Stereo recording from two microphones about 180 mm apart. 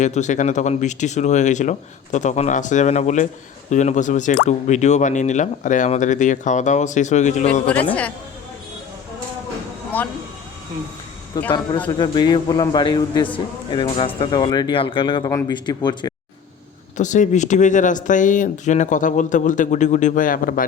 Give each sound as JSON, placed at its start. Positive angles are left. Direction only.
{"t": 0.0, "sound": "speech", "side_deg": 40}
{"t": 7.7, "sound": "speech", "side_deg": 10}
{"t": 9.9, "sound": "speech", "side_deg": 10}
{"t": 11.3, "sound": "speech", "side_deg": 20}
{"t": 17.0, "sound": "speech", "side_deg": 45}